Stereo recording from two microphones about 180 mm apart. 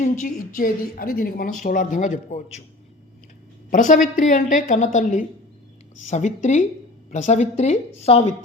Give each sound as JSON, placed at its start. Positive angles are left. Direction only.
{"t": 0.0, "sound": "a woman's voice", "side_deg": 45}
{"t": 3.7, "sound": "a woman's voice", "side_deg": 45}